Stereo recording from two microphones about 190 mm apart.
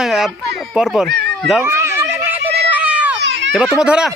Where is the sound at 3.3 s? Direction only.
65° right (ahead or behind).